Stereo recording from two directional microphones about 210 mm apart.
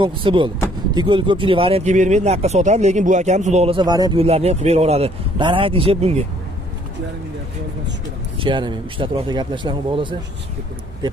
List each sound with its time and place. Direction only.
0.0 s speech: 25° right (ahead or behind)
8.4 s speech: 25° right (ahead or behind)